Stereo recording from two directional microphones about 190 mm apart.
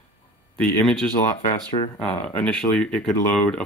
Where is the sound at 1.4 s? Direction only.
35° left (ahead or behind).